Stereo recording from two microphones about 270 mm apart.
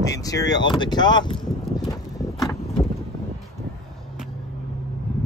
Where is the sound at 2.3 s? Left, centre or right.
Centre.